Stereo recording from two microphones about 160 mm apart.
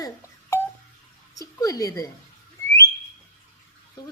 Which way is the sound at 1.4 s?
20° left (ahead or behind).